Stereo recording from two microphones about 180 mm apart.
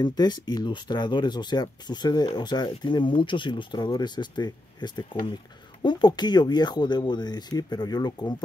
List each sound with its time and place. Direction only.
0.0 s speech: 20° left (ahead or behind)